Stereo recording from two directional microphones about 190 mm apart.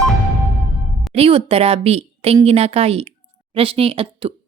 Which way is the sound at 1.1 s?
30° right (ahead or behind).